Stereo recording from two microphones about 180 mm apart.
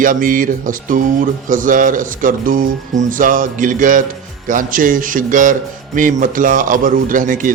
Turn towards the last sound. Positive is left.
turn(degrees=-45)  # may be behind; listen again after turning